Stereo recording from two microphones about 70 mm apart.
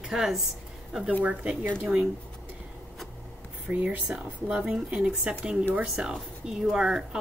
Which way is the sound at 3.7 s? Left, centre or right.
Centre.